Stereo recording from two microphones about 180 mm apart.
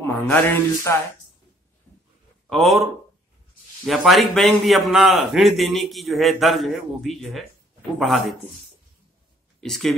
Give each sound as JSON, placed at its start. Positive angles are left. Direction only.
{"t": 0.0, "sound": "a sound", "side_deg": 10}
{"t": 2.5, "sound": "a man's voice", "side_deg": 0}
{"t": 9.6, "sound": "speech", "side_deg": 0}